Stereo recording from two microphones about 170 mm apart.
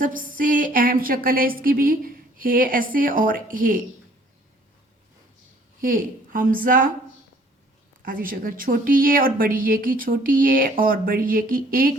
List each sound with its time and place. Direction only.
0.0 s speech: 55° right (ahead or behind)
5.8 s speech: 55° right (ahead or behind)
8.0 s speech: 55° right (ahead or behind)